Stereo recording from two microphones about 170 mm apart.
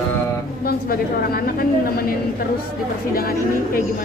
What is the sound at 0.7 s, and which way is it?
Speech, 60° left (ahead or behind).